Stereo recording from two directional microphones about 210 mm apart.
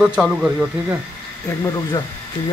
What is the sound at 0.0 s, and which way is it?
Speech, 5° right (ahead or behind).